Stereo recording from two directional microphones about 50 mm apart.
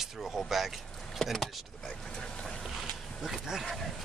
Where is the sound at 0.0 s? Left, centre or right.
Centre.